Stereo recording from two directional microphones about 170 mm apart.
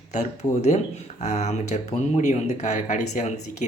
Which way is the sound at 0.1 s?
45° left (ahead or behind).